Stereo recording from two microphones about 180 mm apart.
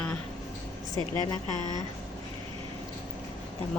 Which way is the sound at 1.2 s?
20° left (ahead or behind).